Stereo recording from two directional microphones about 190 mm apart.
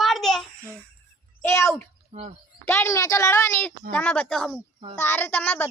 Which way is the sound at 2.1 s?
35° right (ahead or behind).